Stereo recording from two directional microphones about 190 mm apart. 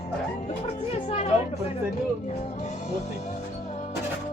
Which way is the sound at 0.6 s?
35° left (ahead or behind).